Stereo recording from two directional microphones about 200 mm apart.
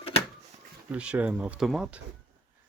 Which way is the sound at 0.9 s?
5° right (ahead or behind).